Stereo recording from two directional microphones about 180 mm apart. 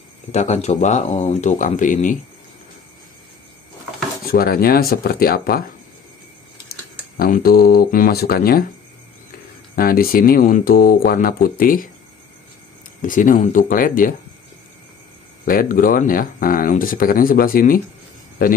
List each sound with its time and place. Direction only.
0.3 s speech: 40° left (ahead or behind)
4.3 s speech: 55° left (ahead or behind)
7.2 s speech: 55° left (ahead or behind)
9.8 s speech: 55° left (ahead or behind)
13.0 s speech: 45° left (ahead or behind)
15.4 s speech: 50° left (ahead or behind)